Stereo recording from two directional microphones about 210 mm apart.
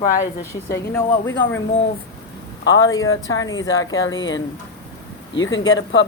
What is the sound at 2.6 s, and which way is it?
A man's voice, 65° left (ahead or behind).